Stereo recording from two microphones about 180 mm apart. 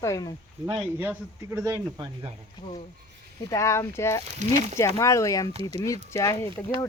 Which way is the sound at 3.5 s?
15° left (ahead or behind).